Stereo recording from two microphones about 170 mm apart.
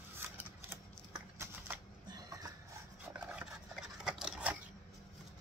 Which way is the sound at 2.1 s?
20° right (ahead or behind).